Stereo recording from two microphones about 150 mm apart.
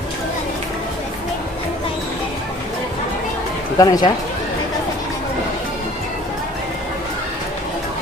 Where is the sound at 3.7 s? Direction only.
25° left (ahead or behind).